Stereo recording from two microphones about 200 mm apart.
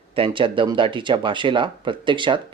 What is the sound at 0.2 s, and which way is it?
Speech, 25° right (ahead or behind).